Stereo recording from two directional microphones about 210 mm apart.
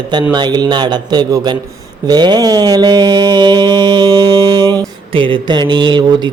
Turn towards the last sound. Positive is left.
turn(degrees=-20)  # may be behind; listen again after turning